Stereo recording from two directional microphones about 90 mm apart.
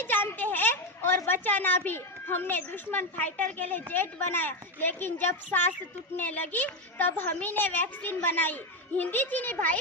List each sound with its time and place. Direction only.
0.0 s a child's voice: 20° left (ahead or behind)